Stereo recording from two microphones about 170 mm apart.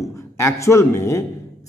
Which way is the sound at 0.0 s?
15° left (ahead or behind).